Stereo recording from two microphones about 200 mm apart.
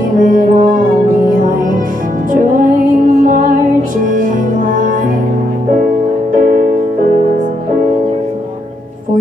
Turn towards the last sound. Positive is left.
turn(degrees=-40)  # may be behind; listen again after turning